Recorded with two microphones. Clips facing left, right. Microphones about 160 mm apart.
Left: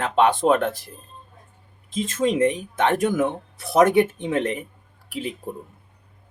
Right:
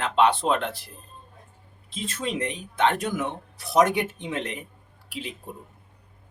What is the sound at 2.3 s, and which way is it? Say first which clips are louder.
Speech: left 7 dB; 45° left (ahead or behind).